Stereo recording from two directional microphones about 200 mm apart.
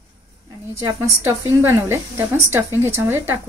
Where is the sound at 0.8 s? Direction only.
15° right (ahead or behind).